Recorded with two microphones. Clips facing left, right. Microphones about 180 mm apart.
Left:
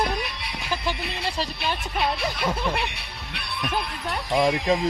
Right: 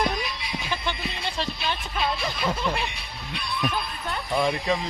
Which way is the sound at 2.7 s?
65° left (ahead or behind).